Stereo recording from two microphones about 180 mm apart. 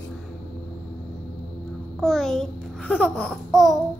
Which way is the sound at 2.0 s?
Centre (ahead or behind).